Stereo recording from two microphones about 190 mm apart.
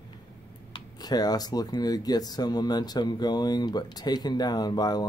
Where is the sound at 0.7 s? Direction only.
20° left (ahead or behind).